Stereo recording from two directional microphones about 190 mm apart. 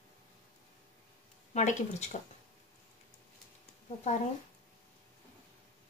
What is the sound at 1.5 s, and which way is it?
Speech, 40° left (ahead or behind).